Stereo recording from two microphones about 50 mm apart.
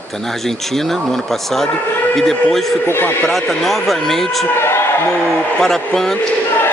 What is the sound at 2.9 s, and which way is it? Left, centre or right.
Speech, left.